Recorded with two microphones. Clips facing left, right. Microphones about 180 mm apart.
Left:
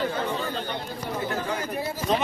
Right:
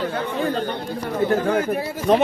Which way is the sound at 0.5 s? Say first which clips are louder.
Right 6 dB; 45° right (ahead or behind).